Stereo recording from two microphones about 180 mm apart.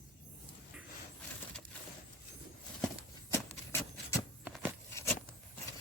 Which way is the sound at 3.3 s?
15° left (ahead or behind).